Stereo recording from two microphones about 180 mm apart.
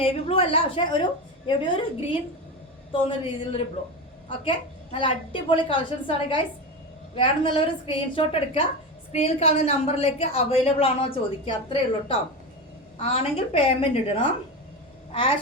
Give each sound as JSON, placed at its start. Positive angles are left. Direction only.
{"t": 0.0, "sound": "a woman's voice", "side_deg": 30}